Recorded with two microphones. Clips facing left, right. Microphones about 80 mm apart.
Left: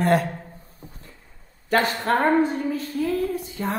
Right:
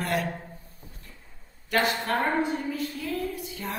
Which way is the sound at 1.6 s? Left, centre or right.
Left.